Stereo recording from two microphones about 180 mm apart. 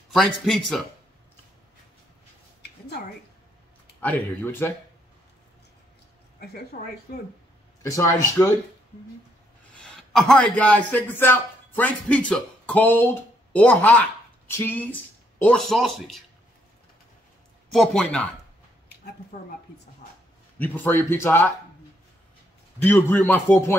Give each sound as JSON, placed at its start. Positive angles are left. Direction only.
{"t": 0.1, "sound": "speech", "side_deg": 0}
{"t": 4.0, "sound": "speech", "side_deg": 10}
{"t": 6.4, "sound": "a woman's voice", "side_deg": 60}
{"t": 7.8, "sound": "speech", "side_deg": 15}
{"t": 9.8, "sound": "a man's voice", "side_deg": 5}
{"t": 17.7, "sound": "speech", "side_deg": 5}
{"t": 20.5, "sound": "speech", "side_deg": 10}
{"t": 22.8, "sound": "speech", "side_deg": 10}